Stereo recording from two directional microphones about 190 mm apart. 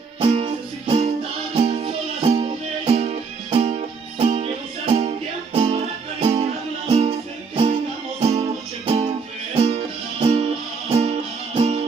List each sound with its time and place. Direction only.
0.2 s music: 30° right (ahead or behind)